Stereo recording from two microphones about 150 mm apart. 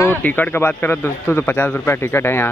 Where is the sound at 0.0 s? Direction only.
10° left (ahead or behind).